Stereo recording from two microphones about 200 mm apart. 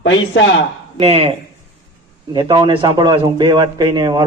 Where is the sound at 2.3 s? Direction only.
20° right (ahead or behind).